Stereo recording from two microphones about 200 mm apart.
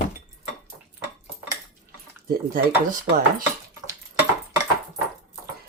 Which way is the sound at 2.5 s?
45° right (ahead or behind).